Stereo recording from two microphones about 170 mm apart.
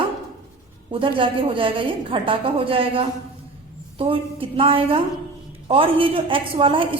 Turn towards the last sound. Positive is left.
turn(degrees=-30)  # may be behind; listen again after turning